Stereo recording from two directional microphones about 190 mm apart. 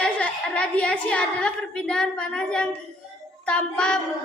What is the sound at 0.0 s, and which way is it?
A woman's voice, 5° left (ahead or behind).